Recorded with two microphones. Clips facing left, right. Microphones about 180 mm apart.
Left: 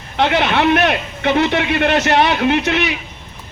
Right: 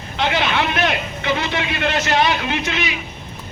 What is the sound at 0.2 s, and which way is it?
A man's voice, 60° left (ahead or behind).